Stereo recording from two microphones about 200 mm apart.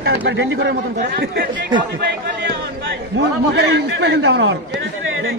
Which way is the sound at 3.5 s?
60° right (ahead or behind).